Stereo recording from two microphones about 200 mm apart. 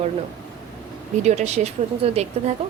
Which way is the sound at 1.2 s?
35° right (ahead or behind).